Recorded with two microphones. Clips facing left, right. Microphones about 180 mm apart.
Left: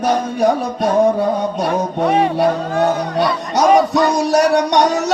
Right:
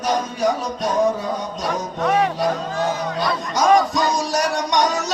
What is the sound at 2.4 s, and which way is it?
Music, 60° left (ahead or behind).